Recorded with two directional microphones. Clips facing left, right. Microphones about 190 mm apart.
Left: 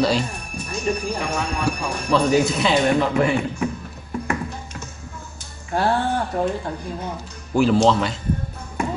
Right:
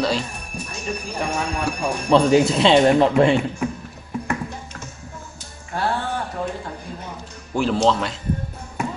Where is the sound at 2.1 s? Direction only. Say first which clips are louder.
Right 3 dB; 30° right (ahead or behind).